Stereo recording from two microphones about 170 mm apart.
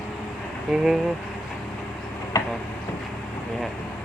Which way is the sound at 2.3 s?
15° left (ahead or behind).